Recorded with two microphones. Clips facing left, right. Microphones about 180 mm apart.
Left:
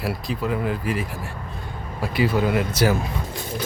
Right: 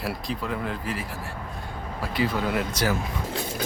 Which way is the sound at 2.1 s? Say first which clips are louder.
Left 5 dB; 5° left (ahead or behind).